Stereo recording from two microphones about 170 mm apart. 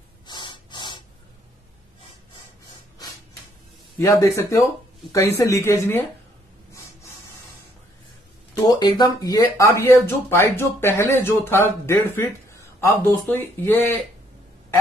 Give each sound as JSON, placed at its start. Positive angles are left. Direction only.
{"t": 0.3, "sound": "snort", "side_deg": 25}
{"t": 4.0, "sound": "speech", "side_deg": 15}
{"t": 6.7, "sound": "a sound", "side_deg": 15}
{"t": 8.6, "sound": "speech", "side_deg": 25}